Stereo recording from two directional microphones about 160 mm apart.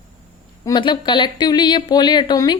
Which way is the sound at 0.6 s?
25° left (ahead or behind).